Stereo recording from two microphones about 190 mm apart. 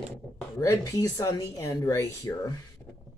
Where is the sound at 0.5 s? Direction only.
20° left (ahead or behind).